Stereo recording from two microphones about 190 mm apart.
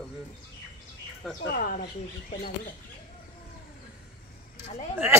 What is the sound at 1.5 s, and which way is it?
Speech, 50° left (ahead or behind).